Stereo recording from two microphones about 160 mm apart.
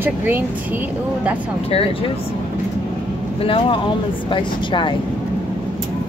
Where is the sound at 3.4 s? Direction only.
35° left (ahead or behind).